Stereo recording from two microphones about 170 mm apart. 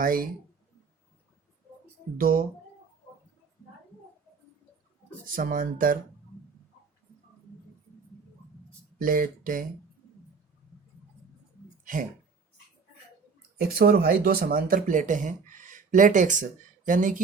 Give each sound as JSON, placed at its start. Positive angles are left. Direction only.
{"t": 0.0, "sound": "speech", "side_deg": -55}
{"t": 2.1, "sound": "speech", "side_deg": -55}
{"t": 5.2, "sound": "speech", "side_deg": -55}
{"t": 9.0, "sound": "speech", "side_deg": -55}
{"t": 13.7, "sound": "speech", "side_deg": -65}